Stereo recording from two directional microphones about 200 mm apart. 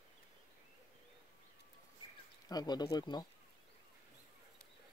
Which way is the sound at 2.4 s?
20° left (ahead or behind).